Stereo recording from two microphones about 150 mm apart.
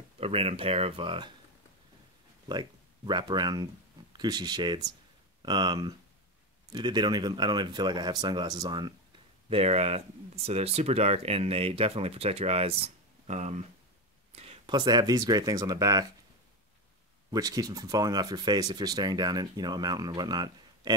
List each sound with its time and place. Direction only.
0.2 s speech: 40° right (ahead or behind)
2.4 s speech: 30° right (ahead or behind)
9.5 s speech: 40° right (ahead or behind); by 16.1 s 25° right (ahead or behind)
17.3 s speech: 25° right (ahead or behind)